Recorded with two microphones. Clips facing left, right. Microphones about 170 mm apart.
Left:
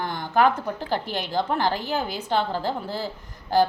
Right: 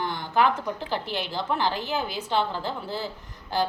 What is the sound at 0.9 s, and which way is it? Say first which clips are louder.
A woman's voice: left 3 dB; 45° left (ahead or behind).